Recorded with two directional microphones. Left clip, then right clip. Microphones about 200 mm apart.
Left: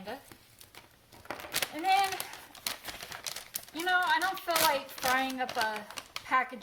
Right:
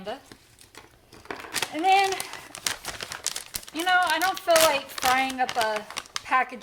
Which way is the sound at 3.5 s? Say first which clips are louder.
Right 6 dB; 35° right (ahead or behind).